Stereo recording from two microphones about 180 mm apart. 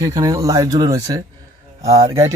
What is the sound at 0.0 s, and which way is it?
Speech, 20° right (ahead or behind).